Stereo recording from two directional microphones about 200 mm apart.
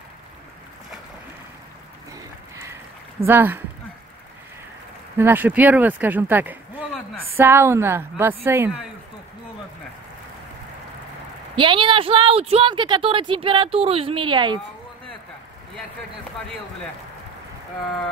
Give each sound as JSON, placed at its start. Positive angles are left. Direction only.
{"t": 3.3, "sound": "speech", "side_deg": -10}
{"t": 5.1, "sound": "speech", "side_deg": -10}
{"t": 11.5, "sound": "a woman's voice", "side_deg": -25}